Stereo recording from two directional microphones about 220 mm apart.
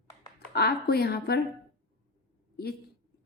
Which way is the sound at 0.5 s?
45° left (ahead or behind).